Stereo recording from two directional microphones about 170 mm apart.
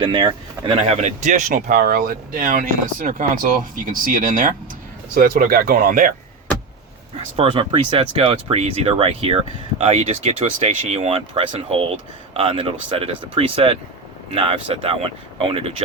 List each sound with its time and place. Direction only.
0.0 s speech: 30° right (ahead or behind); by 1.4 s 45° right (ahead or behind)
1.5 s speech: 55° right (ahead or behind)
7.3 s speech: 30° right (ahead or behind)